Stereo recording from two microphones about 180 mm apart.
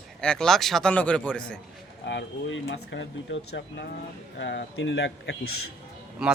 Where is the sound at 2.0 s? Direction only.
75° left (ahead or behind).